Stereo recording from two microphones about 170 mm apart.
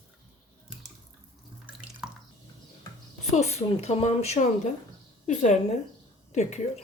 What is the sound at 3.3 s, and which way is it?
A woman's voice, 40° left (ahead or behind).